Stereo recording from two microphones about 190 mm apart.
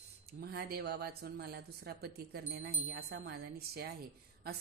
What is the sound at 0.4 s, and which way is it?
A woman's voice, 55° right (ahead or behind).